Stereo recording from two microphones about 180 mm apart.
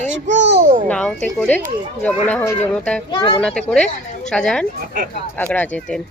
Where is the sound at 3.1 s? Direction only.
30° left (ahead or behind).